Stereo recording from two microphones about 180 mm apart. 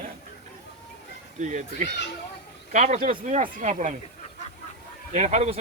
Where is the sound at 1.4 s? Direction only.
40° right (ahead or behind).